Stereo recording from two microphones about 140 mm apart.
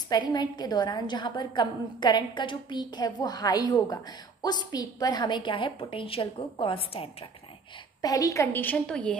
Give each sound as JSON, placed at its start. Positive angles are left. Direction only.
{"t": 0.1, "sound": "a woman's voice", "side_deg": 30}
{"t": 8.0, "sound": "a woman's voice", "side_deg": 25}